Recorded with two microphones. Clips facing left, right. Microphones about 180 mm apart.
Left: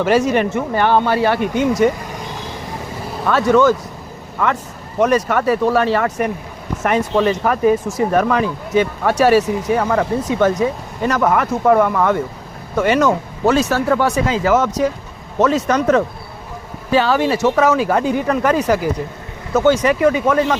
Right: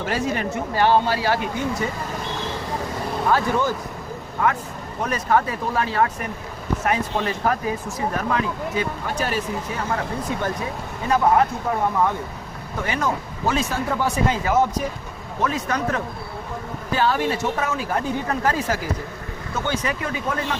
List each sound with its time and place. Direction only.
0.0 s speech: 80° left
3.2 s speech: 85° left
4.9 s speech: 85° left